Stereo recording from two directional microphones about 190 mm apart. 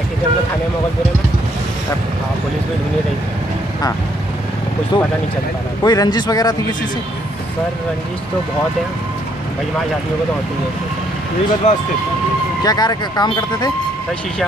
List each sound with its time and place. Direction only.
4.9 s speech: 25° left (ahead or behind)
11.6 s speech: 40° left (ahead or behind)
12.6 s speech: 20° left (ahead or behind)